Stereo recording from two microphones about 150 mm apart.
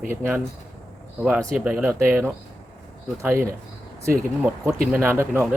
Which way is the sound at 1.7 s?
10° right (ahead or behind).